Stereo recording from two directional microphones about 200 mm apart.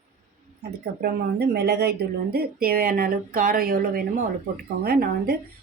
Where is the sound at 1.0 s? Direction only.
50° right (ahead or behind).